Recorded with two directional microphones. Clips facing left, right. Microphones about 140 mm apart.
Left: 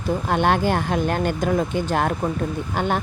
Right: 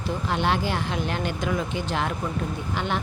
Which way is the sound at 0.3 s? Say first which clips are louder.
Left 5 dB; 50° left (ahead or behind).